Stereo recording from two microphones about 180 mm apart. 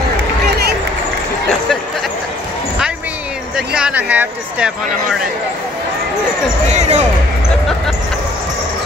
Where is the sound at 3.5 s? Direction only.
5° right (ahead or behind).